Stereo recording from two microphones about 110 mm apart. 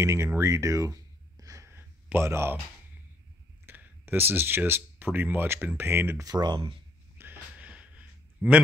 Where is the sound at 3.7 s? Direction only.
20° right (ahead or behind).